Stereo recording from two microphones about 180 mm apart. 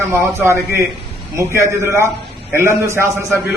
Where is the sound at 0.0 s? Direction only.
15° right (ahead or behind).